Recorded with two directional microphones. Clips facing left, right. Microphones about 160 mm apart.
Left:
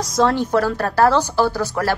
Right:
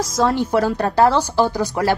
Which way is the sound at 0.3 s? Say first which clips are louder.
Even; 10° right (ahead or behind).